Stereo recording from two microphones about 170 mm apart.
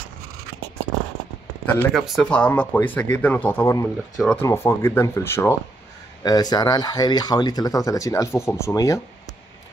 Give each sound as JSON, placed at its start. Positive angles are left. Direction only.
{"t": 1.8, "sound": "speech", "side_deg": 0}